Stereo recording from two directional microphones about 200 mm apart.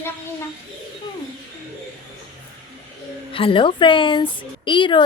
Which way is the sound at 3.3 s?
25° left (ahead or behind).